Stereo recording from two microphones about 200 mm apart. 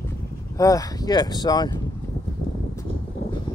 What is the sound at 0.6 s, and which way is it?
Speech, 15° left (ahead or behind).